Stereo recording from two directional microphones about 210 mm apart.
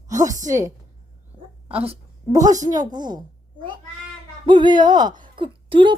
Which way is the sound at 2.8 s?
20° right (ahead or behind).